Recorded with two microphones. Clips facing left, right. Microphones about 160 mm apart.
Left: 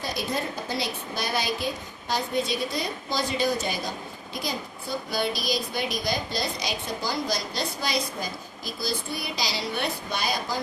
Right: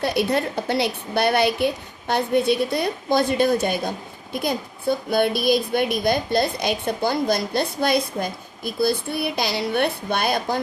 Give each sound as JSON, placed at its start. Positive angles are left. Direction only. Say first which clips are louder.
{"t": 0.0, "sound": "a woman's voice", "louder": "right 8 dB", "side_deg": -65}